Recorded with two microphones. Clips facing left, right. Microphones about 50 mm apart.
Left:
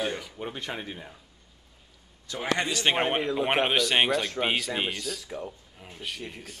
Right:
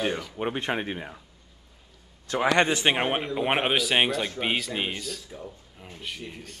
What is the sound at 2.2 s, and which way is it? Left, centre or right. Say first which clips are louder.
Speech: right 6 dB; right.